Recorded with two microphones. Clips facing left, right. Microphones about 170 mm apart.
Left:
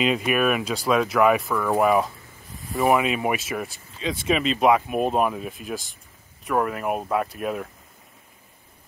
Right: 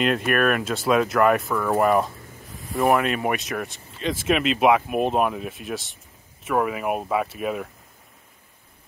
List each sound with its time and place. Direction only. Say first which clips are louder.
0.0 s speech: even; centre (ahead or behind)